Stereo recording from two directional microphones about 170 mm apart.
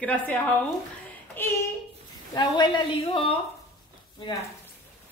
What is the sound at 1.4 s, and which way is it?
Speech, 15° left (ahead or behind).